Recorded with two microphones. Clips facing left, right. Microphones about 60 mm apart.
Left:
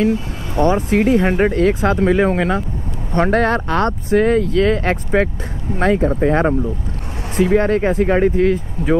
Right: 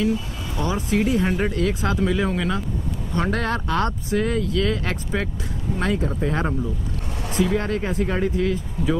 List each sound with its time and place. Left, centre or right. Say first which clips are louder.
0.0 s speech: left 5 dB; left